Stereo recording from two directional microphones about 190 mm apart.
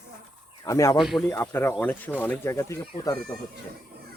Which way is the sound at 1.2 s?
15° left (ahead or behind).